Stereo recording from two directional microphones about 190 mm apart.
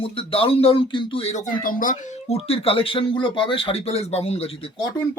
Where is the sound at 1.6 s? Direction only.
45° left (ahead or behind).